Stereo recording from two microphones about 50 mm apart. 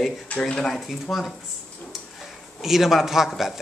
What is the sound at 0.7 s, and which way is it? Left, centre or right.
Speech, centre.